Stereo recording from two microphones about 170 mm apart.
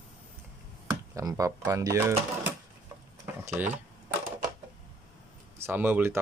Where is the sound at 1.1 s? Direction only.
20° right (ahead or behind).